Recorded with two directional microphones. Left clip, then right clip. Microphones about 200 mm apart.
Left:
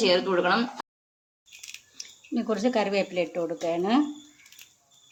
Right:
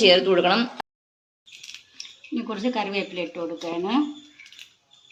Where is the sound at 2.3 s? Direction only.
40° left (ahead or behind).